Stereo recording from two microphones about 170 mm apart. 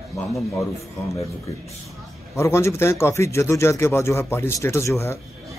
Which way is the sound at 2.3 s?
15° left (ahead or behind).